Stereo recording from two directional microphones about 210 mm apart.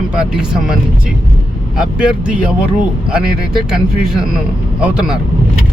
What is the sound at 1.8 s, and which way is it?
Speech, 5° right (ahead or behind).